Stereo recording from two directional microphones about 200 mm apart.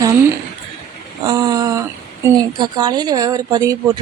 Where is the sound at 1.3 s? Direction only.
20° right (ahead or behind).